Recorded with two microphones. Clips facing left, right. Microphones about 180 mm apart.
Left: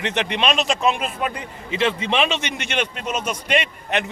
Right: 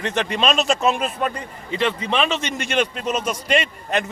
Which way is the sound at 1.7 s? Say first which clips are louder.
Left 1 dB; 20° left (ahead or behind).